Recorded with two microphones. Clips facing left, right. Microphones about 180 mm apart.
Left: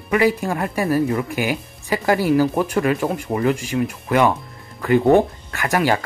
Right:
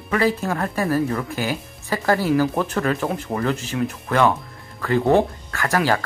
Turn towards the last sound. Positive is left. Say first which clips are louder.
# left 1 dB
turn(degrees=15)  # may be behind; listen again after turning